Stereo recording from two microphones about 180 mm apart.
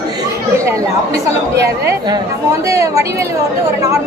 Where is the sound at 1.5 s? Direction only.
20° right (ahead or behind).